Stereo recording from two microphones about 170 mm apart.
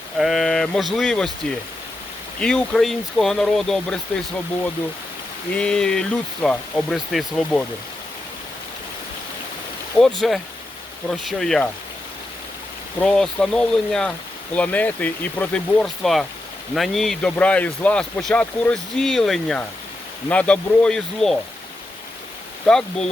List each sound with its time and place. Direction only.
0.2 s speech: centre (ahead or behind)
5.5 s speech: 5° left (ahead or behind)
10.0 s speech: centre (ahead or behind)
13.0 s speech: 5° left (ahead or behind)
22.6 s speech: 5° left (ahead or behind)